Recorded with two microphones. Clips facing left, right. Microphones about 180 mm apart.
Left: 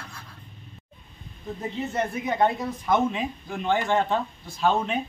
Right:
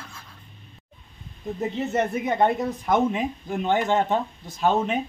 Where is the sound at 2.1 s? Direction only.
50° right (ahead or behind).